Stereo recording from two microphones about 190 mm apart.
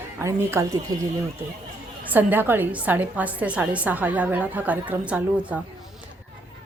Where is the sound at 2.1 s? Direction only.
10° right (ahead or behind).